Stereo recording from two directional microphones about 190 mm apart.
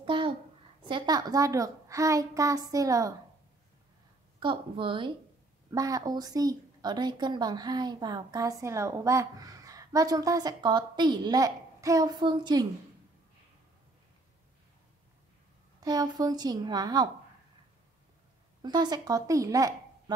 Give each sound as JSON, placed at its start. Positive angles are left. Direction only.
{"t": 0.0, "sound": "a sound", "side_deg": -25}
{"t": 0.8, "sound": "a child's voice", "side_deg": -25}
{"t": 4.4, "sound": "a woman's voice", "side_deg": -25}
{"t": 15.8, "sound": "a woman's voice", "side_deg": -20}
{"t": 18.6, "sound": "a woman's voice", "side_deg": -20}